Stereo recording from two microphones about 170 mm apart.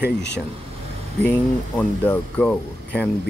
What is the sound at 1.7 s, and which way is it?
Speech, 10° left (ahead or behind).